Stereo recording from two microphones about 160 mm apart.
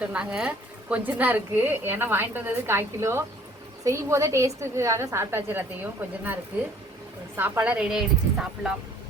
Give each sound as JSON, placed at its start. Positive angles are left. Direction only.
{"t": 0.0, "sound": "a woman's voice", "side_deg": -5}